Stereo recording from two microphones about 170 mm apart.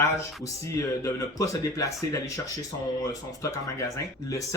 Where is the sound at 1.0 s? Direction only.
20° left (ahead or behind).